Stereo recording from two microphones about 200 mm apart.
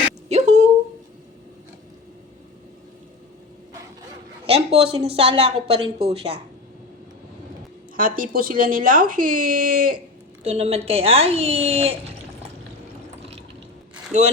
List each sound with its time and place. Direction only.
0.3 s a sound: 35° right (ahead or behind)
4.4 s a woman's voice: 30° right (ahead or behind)
7.9 s speech: 45° right (ahead or behind)
10.4 s a woman's voice: 30° right (ahead or behind)